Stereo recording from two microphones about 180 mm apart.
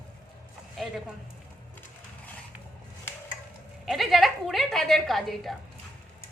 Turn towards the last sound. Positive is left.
turn(degrees=0)  # may be behind; listen again after turning